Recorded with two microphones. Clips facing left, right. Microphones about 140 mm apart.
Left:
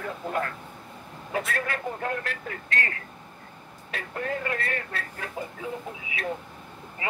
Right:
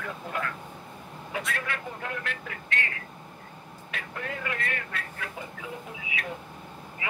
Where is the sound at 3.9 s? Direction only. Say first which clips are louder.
Left 5 dB; 35° left (ahead or behind).